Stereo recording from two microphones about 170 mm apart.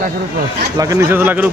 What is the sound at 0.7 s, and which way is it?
Speech, 20° right (ahead or behind).